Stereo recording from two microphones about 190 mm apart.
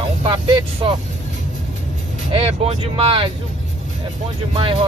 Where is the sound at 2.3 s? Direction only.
30° right (ahead or behind).